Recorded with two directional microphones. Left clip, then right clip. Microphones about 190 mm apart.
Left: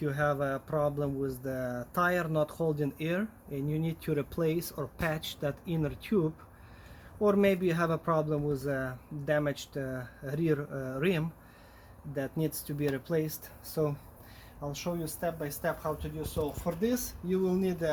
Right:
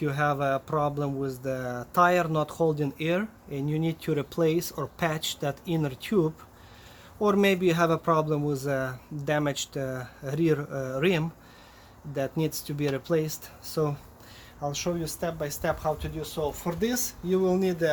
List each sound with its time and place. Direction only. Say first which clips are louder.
0.0 s speech: right 4 dB; 30° right (ahead or behind)
16.4 s speech: right 4 dB; 55° right (ahead or behind)
16.8 s speech: right 4 dB; 45° right (ahead or behind)